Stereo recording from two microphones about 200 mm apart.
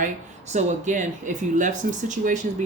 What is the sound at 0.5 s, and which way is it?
Speech, 40° right (ahead or behind).